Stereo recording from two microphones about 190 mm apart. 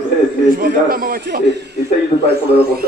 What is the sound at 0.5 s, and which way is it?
A man's voice, 50° right (ahead or behind).